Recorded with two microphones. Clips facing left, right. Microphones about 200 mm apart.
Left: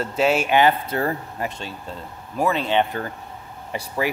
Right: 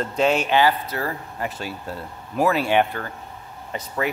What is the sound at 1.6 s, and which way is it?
Speech, 10° right (ahead or behind).